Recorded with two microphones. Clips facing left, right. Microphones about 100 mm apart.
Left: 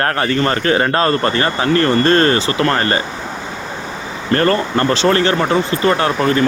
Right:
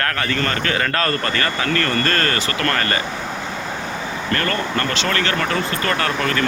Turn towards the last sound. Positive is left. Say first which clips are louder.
# left 6 dB
turn(degrees=25)  # may be behind; listen again after turning